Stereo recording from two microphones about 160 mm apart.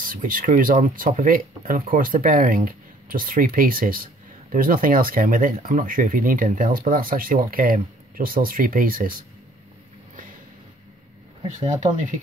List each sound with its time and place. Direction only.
0.0 s speech: 60° right (ahead or behind)
11.6 s speech: 50° right (ahead or behind)